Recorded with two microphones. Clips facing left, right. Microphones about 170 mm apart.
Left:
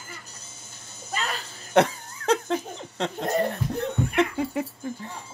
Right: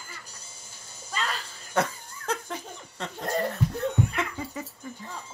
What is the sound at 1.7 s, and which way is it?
Laughter, 75° left (ahead or behind).